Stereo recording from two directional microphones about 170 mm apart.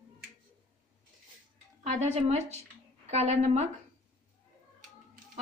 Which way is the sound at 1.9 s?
40° right (ahead or behind).